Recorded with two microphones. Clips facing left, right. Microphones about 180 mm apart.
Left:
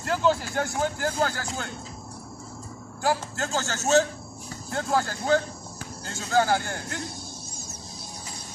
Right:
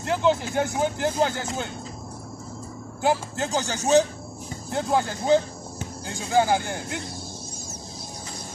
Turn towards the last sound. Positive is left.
turn(degrees=-15)  # may be behind; listen again after turning